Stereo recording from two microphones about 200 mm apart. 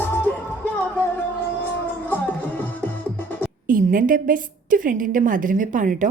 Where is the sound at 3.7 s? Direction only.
40° right (ahead or behind).